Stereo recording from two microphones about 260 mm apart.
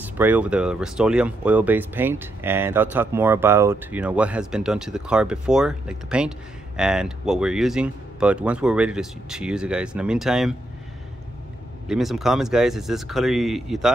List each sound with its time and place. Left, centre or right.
0.0 s speech: centre
11.9 s speech: centre